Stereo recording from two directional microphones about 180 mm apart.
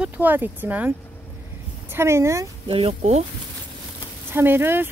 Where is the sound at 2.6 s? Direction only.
30° right (ahead or behind).